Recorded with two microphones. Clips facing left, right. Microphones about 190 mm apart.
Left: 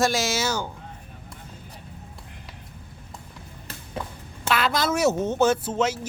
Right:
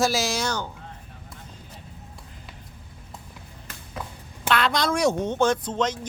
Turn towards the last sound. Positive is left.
turn(degrees=5)  # may be behind; listen again after turning